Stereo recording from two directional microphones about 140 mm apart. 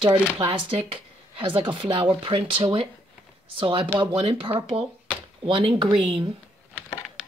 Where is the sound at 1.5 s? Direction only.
35° right (ahead or behind).